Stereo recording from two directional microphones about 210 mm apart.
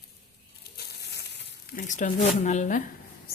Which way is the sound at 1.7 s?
40° left (ahead or behind).